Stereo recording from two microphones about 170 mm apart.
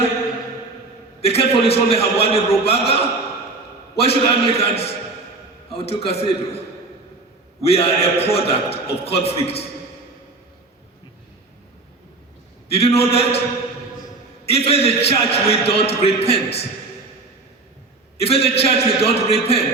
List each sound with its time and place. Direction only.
1.2 s a man's voice: 35° left (ahead or behind)
7.7 s a man's voice: 35° left (ahead or behind)
12.7 s a man's voice: 35° left (ahead or behind)
14.5 s a man's voice: 35° left (ahead or behind)
18.2 s a man's voice: 35° left (ahead or behind)